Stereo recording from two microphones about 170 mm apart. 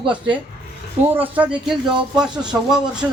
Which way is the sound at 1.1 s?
10° right (ahead or behind).